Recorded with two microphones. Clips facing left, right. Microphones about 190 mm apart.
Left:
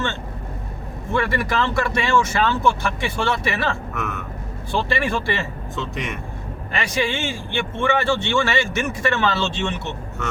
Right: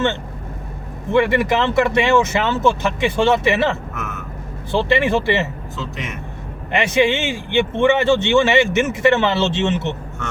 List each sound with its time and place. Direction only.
1.1 s a man's voice: 20° right (ahead or behind)
3.9 s speech: centre (ahead or behind)
4.7 s a man's voice: 20° right (ahead or behind)
5.7 s speech: centre (ahead or behind)
6.7 s a man's voice: 20° right (ahead or behind)